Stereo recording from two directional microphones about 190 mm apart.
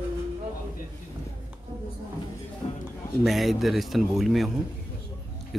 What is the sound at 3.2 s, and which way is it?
Speech, centre (ahead or behind).